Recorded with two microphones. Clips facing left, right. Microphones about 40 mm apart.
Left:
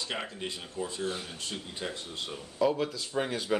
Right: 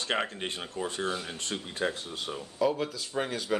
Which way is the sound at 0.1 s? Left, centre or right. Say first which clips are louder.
Right 9 dB; right.